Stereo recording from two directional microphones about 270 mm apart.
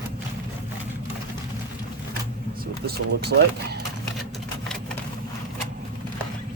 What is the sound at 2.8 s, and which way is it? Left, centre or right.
Speech, right.